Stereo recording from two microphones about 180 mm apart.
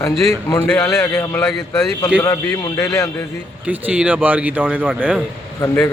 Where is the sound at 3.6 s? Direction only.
10° right (ahead or behind).